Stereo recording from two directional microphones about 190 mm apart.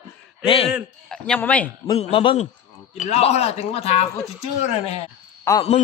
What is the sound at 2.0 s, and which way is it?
Speech, 30° left (ahead or behind).